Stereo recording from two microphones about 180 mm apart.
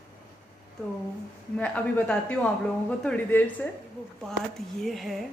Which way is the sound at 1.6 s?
5° left (ahead or behind).